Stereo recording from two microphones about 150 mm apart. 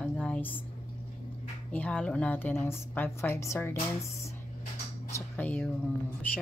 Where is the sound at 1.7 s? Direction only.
5° left (ahead or behind).